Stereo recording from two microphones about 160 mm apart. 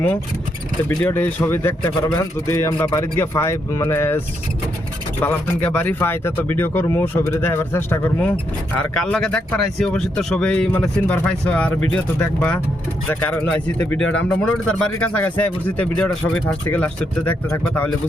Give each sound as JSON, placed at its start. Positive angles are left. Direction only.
{"t": 0.9, "sound": "speech", "side_deg": 15}
{"t": 5.2, "sound": "speech", "side_deg": 10}